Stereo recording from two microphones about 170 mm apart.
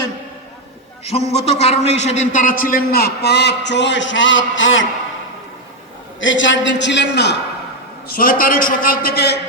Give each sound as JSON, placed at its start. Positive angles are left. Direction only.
{"t": 1.3, "sound": "a man's voice", "side_deg": 40}
{"t": 6.1, "sound": "a man's voice", "side_deg": 90}
{"t": 8.0, "sound": "a man's voice", "side_deg": 60}